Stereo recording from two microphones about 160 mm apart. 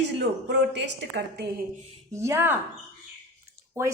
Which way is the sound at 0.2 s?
90° right.